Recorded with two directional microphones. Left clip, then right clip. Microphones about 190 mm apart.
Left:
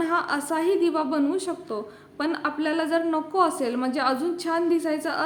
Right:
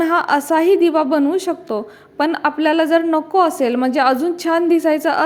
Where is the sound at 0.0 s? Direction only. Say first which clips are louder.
Right 9 dB; 35° right (ahead or behind).